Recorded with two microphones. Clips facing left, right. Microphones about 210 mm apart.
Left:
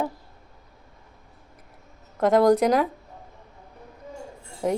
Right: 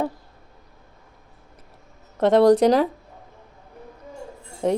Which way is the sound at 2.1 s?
30° right (ahead or behind).